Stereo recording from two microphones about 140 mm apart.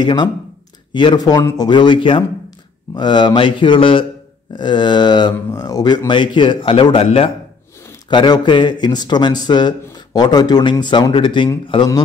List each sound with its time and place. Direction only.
0.0 s speech: 35° left (ahead or behind)
8.1 s speech: 35° left (ahead or behind)